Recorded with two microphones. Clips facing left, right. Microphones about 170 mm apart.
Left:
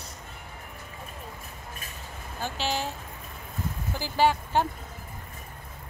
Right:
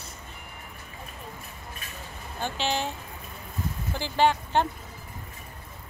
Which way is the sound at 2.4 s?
5° left (ahead or behind).